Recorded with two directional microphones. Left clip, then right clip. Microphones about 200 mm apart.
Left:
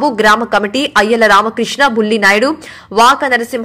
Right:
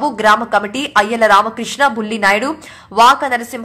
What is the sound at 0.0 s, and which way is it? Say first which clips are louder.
Speech: left 2 dB; 15° left (ahead or behind).